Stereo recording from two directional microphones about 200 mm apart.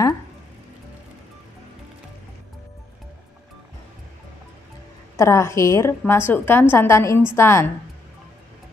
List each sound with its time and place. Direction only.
5.1 s a woman's voice: 15° left (ahead or behind)